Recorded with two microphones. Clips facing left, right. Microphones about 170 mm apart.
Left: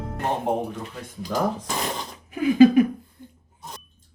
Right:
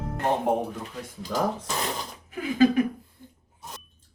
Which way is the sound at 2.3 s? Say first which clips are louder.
Left 6 dB; 15° left (ahead or behind).